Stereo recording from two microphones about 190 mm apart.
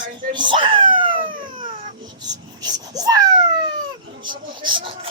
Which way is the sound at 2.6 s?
20° right (ahead or behind).